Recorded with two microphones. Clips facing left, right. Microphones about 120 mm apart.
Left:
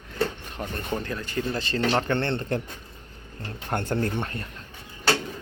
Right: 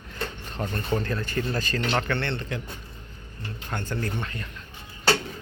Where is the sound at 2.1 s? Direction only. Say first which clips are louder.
Left 4 dB; 45° left (ahead or behind).